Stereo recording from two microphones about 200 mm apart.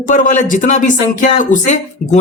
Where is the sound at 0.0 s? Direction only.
40° left (ahead or behind).